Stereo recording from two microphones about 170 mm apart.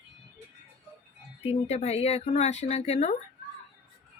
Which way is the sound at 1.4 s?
40° left (ahead or behind).